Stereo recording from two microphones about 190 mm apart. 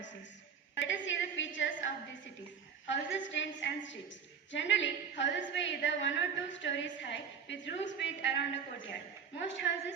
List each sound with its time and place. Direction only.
0.8 s a woman's voice: 75° left (ahead or behind)
2.9 s a woman's voice: 75° left (ahead or behind)